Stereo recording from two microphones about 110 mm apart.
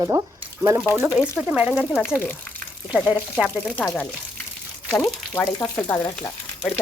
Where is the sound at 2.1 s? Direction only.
15° left (ahead or behind).